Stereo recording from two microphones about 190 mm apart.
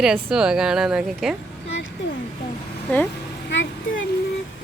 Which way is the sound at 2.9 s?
5° left (ahead or behind).